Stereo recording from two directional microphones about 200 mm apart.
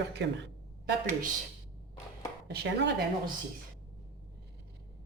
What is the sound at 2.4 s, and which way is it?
Speech, 55° right (ahead or behind).